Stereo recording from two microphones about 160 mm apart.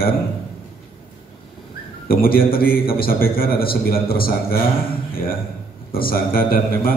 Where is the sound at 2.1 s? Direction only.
65° left (ahead or behind).